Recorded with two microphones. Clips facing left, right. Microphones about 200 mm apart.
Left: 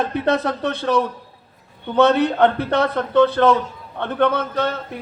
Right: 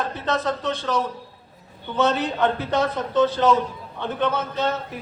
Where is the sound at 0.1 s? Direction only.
60° left (ahead or behind).